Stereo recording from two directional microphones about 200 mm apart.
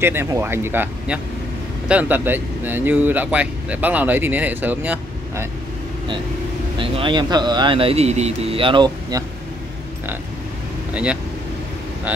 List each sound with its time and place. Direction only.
0.0 s speech: 10° right (ahead or behind)
6.8 s speech: 25° right (ahead or behind)
10.9 s speech: 5° right (ahead or behind)